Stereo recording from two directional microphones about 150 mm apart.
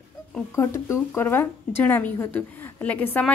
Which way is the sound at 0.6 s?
20° left (ahead or behind).